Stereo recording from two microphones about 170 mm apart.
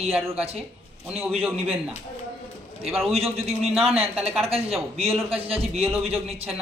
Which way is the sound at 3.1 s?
35° right (ahead or behind).